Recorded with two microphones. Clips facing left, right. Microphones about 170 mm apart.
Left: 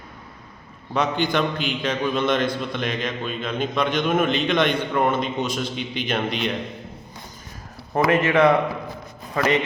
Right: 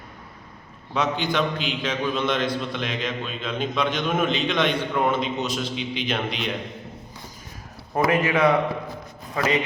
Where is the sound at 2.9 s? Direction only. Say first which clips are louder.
Left 2 dB; 50° left (ahead or behind).